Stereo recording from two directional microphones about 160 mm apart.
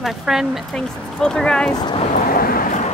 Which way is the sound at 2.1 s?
65° left (ahead or behind).